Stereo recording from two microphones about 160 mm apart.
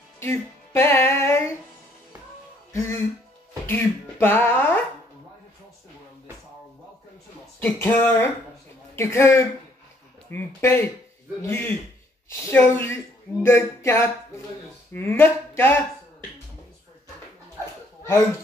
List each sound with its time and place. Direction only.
0.2 s music: 15° left (ahead or behind)
2.7 s speech: 15° left (ahead or behind)
3.6 s a sound: 15° left (ahead or behind)
7.6 s speech: 10° left (ahead or behind)